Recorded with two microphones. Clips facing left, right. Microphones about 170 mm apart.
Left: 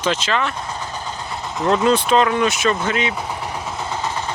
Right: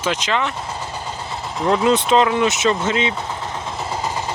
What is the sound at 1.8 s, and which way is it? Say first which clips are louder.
Speech: right 1 dB; 20° right (ahead or behind).